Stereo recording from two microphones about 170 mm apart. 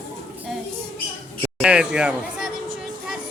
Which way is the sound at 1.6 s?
5° right (ahead or behind).